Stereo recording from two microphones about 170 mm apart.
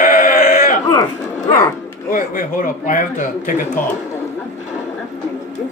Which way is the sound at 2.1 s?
50° left (ahead or behind).